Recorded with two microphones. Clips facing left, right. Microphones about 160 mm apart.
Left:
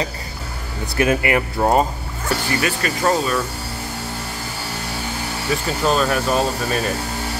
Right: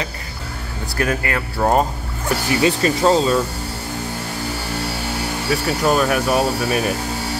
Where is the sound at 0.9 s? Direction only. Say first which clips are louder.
Left 4 dB; 20° left (ahead or behind).